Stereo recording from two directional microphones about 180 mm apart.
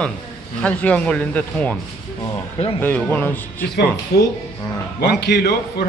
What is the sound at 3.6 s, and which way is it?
A man's voice, 65° left (ahead or behind).